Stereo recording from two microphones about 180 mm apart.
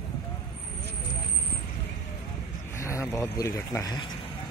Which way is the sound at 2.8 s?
15° left (ahead or behind).